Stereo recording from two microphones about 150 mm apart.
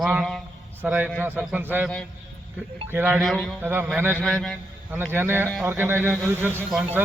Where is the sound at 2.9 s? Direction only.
10° right (ahead or behind).